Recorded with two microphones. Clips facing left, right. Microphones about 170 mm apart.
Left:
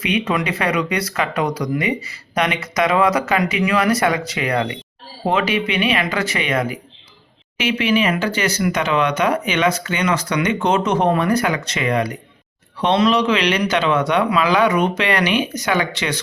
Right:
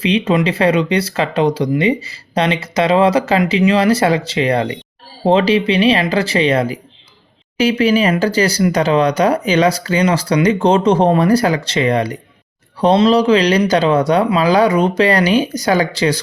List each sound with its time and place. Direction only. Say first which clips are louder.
0.0 s speech: right 6 dB; 30° right (ahead or behind)